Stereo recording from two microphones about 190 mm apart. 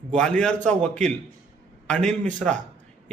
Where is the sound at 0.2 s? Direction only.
5° left (ahead or behind).